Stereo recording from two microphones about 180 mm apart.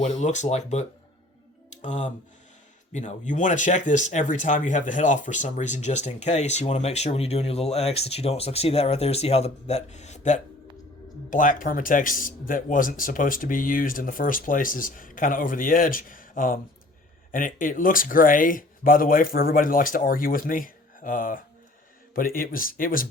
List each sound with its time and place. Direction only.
0.0 s speech: 40° left (ahead or behind)